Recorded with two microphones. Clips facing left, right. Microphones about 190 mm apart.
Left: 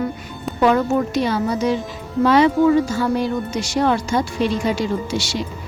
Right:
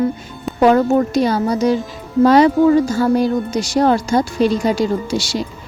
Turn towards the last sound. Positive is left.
turn(degrees=-40)  # may be behind; listen again after turning